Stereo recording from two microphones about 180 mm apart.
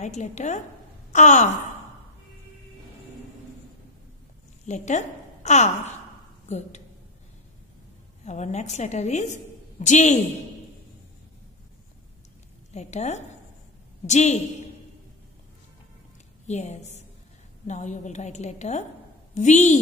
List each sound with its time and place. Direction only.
0.0 s a woman's voice: 40° left (ahead or behind)
4.6 s a woman's voice: 40° left (ahead or behind)
8.3 s a woman's voice: 40° left (ahead or behind)
12.7 s a woman's voice: 40° left (ahead or behind)
16.4 s a woman's voice: 40° left (ahead or behind)